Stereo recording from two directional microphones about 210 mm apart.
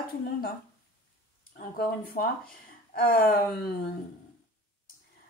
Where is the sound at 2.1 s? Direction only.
45° left (ahead or behind).